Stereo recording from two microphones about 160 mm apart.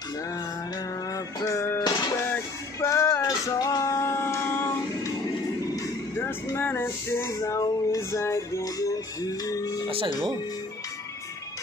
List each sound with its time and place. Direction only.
1.1 s music: 20° left (ahead or behind)
9.8 s music: 35° right (ahead or behind)